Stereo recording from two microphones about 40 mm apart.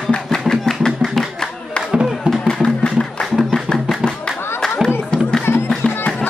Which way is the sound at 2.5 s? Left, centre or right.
Centre.